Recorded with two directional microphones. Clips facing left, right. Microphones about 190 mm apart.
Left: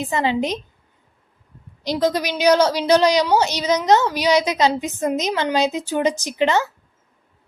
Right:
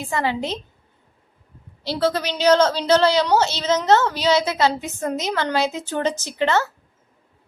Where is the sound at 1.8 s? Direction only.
15° left (ahead or behind).